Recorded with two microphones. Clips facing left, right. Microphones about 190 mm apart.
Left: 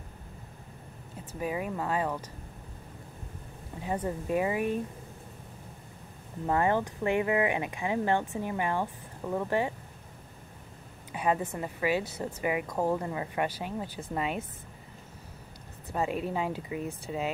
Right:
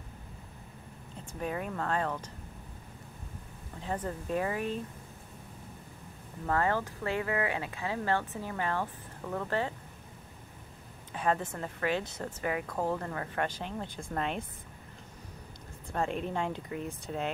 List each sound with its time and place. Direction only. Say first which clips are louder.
1.4 s speech: left 2 dB; 5° left (ahead or behind)
3.8 s speech: left 3 dB; 10° left (ahead or behind)
6.4 s speech: left 3 dB; 20° left (ahead or behind)
11.1 s a woman's voice: left 2 dB; 10° left (ahead or behind)
15.9 s speech: left 2 dB; 5° left (ahead or behind)